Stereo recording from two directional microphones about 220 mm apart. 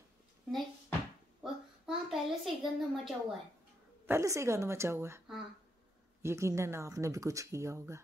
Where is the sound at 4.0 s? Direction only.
10° right (ahead or behind).